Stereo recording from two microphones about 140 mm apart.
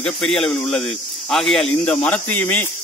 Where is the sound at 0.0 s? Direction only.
5° left (ahead or behind).